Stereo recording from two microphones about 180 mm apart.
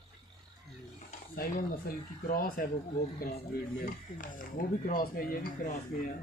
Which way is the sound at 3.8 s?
50° left (ahead or behind).